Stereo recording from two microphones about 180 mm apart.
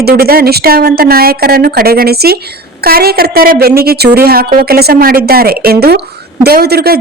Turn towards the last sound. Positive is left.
turn(degrees=-60)  # may be behind; listen again after turning